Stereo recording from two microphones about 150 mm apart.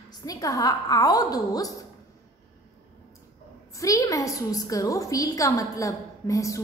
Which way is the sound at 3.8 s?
20° left (ahead or behind).